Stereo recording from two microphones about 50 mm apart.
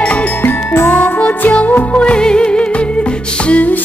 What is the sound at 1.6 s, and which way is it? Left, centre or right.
Music, left.